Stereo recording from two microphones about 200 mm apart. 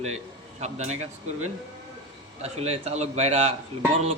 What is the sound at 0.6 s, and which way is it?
Speech, 35° right (ahead or behind).